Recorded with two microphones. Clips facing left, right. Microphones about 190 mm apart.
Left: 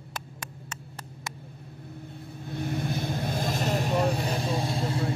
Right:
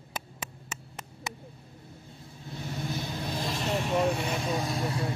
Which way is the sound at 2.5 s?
55° left (ahead or behind).